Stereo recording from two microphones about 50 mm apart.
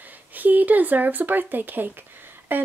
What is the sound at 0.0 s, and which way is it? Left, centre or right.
Speech, right.